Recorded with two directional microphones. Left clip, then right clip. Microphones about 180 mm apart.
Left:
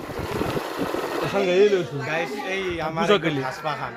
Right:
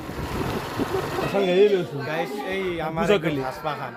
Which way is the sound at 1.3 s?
15° left (ahead or behind).